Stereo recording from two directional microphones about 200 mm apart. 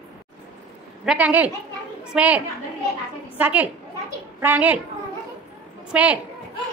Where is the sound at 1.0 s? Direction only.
5° right (ahead or behind).